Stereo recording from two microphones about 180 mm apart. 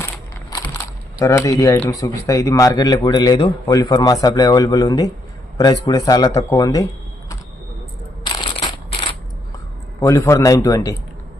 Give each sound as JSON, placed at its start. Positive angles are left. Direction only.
{"t": 0.5, "sound": "crushing", "side_deg": 20}
{"t": 1.2, "sound": "speech", "side_deg": 15}
{"t": 8.2, "sound": "a sound", "side_deg": 25}
{"t": 10.0, "sound": "a man's voice", "side_deg": 15}